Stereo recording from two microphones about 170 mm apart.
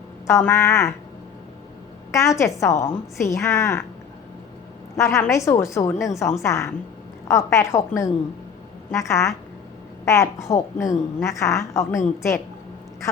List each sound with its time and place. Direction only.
0.3 s a woman's voice: 15° left (ahead or behind)
2.1 s a woman's voice: 15° left (ahead or behind)
4.9 s a woman's voice: 15° left (ahead or behind)